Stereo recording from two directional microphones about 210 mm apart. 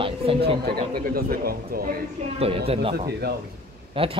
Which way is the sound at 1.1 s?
45° right (ahead or behind).